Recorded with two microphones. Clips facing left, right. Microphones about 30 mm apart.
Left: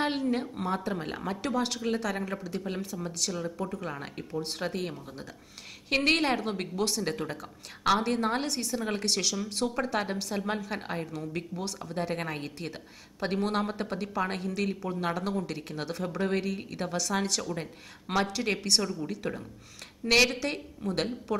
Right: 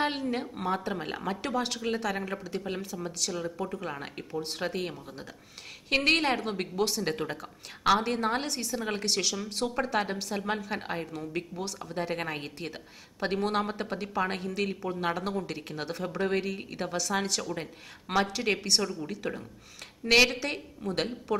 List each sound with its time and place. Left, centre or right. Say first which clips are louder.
0.0 s a woman's voice: left 1 dB; centre
3.3 s speech: even; right
3.6 s a woman's voice: even; centre